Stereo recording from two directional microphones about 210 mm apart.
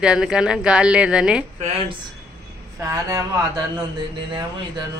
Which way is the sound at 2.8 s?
15° right (ahead or behind).